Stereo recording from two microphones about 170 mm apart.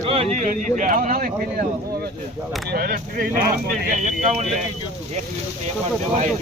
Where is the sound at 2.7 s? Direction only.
65° right (ahead or behind).